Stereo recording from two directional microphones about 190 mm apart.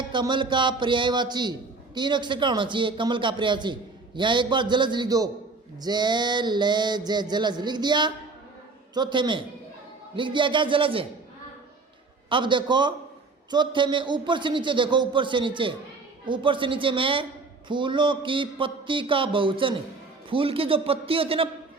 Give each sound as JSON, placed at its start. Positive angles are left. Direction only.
{"t": 0.1, "sound": "a man's voice", "side_deg": -25}
{"t": 12.3, "sound": "a man's voice", "side_deg": -25}